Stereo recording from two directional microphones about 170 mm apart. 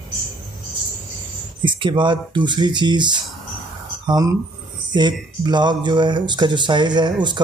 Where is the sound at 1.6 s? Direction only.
30° right (ahead or behind).